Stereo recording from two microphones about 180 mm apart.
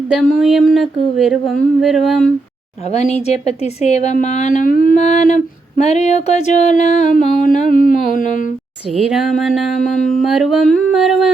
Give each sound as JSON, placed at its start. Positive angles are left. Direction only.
{"t": 0.1, "sound": "speech", "side_deg": 0}
{"t": 2.9, "sound": "speech", "side_deg": 35}
{"t": 5.8, "sound": "a sound", "side_deg": 35}
{"t": 9.0, "sound": "speech", "side_deg": 0}